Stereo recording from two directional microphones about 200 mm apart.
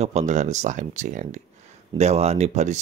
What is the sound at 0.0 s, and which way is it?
Speech, 35° right (ahead or behind).